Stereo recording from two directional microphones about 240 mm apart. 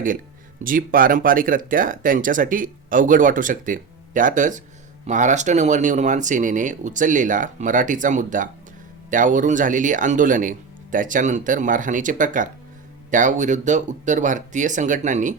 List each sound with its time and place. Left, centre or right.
0.6 s speech: right